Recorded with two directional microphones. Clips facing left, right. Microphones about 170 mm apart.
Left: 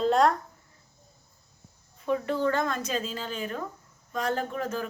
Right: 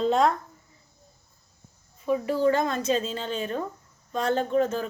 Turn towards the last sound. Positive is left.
turn(degrees=-25)  # may be behind; listen again after turning